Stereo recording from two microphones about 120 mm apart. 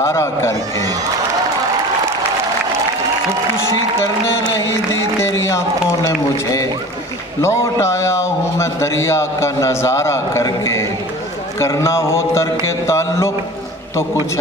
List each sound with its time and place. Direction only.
0.0 s a man's voice: 25° left (ahead or behind)
5.2 s a man's voice: 25° left (ahead or behind)